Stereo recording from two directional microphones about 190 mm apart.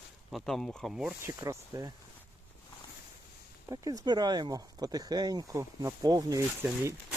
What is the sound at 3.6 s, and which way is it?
Speech, 20° right (ahead or behind).